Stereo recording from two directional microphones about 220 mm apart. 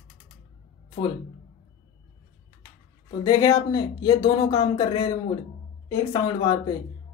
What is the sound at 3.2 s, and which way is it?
Speech, 15° left (ahead or behind).